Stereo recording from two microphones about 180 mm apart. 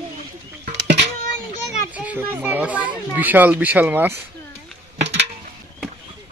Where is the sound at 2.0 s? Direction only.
10° right (ahead or behind).